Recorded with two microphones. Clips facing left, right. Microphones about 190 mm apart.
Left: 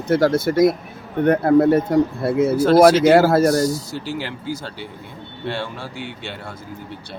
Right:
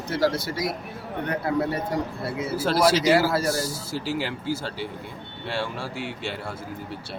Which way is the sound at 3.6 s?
5° right (ahead or behind).